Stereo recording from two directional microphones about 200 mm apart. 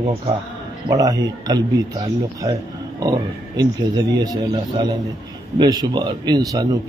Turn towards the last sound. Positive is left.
turn(degrees=-20)  # may be behind; listen again after turning